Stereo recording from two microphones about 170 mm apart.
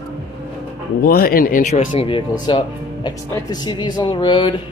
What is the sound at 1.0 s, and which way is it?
Speech, 65° left (ahead or behind).